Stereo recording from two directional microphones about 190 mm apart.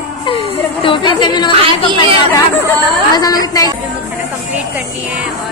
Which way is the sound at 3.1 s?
20° left (ahead or behind).